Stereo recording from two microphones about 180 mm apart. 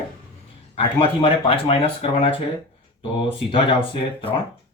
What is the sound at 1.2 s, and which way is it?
Speech, 30° left (ahead or behind).